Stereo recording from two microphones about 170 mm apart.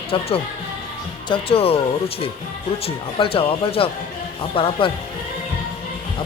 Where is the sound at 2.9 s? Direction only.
35° left (ahead or behind).